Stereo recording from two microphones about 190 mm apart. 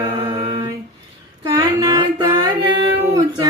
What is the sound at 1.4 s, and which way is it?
Music, 25° right (ahead or behind).